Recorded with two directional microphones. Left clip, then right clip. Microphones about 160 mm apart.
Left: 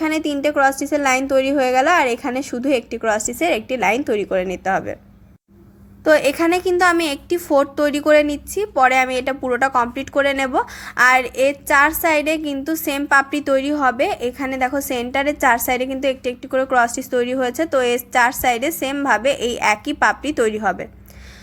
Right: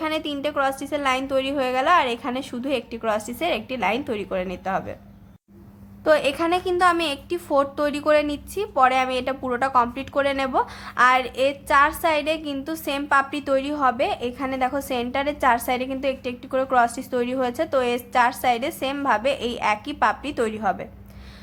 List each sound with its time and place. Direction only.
0.0 s a woman's voice: 30° left (ahead or behind)
6.1 s a woman's voice: 25° left (ahead or behind)